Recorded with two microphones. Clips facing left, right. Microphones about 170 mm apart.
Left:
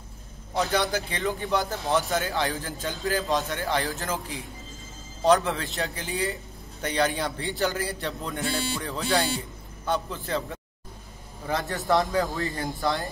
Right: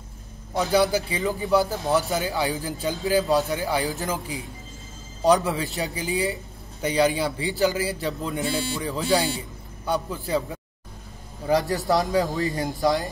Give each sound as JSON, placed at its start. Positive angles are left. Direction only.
{"t": 0.6, "sound": "a man's voice", "side_deg": -5}